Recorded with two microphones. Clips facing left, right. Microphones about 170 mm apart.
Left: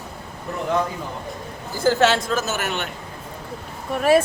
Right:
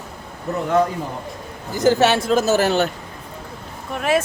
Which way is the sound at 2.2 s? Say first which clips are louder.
Right 8 dB; 35° right (ahead or behind).